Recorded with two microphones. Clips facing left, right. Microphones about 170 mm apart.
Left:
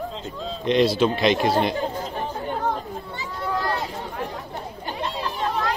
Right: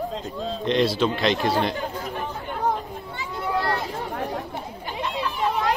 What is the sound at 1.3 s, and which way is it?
Speech, 20° left (ahead or behind).